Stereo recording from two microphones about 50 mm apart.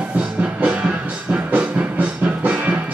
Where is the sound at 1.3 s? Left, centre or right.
Right.